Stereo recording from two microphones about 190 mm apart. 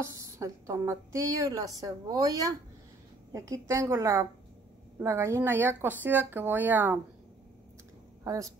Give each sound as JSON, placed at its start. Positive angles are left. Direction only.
{"t": 0.0, "sound": "a woman's voice", "side_deg": -15}
{"t": 3.6, "sound": "a woman's voice", "side_deg": -15}
{"t": 8.2, "sound": "speech", "side_deg": -15}